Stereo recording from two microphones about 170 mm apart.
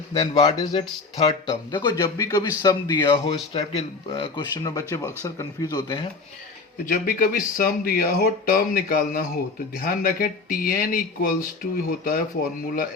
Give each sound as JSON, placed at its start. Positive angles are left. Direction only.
{"t": 0.1, "sound": "speech", "side_deg": 30}
{"t": 3.2, "sound": "speech", "side_deg": 35}
{"t": 6.8, "sound": "speech", "side_deg": 60}